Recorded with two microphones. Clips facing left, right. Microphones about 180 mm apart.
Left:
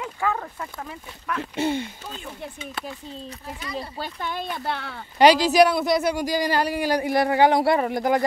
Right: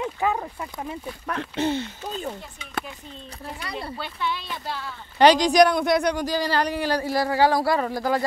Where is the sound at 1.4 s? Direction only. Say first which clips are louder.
Even; 10° left (ahead or behind).